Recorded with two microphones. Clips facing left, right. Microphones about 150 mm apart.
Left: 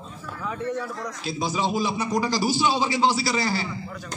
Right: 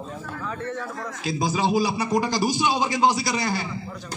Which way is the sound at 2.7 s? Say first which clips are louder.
Right 2 dB; 50° right (ahead or behind).